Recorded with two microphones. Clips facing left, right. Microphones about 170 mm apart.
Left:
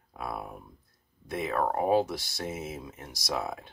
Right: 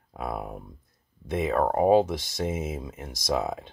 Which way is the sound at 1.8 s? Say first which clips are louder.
Right 6 dB; 20° right (ahead or behind).